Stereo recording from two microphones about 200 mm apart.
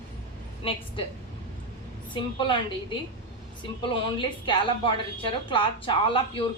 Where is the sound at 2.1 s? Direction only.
25° left (ahead or behind).